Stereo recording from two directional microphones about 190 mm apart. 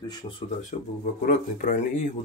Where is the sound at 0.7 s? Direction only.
40° left (ahead or behind).